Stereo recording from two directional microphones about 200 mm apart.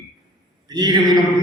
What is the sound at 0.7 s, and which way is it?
Speech, 20° right (ahead or behind).